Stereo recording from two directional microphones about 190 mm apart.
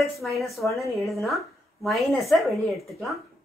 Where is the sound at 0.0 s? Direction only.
Centre (ahead or behind).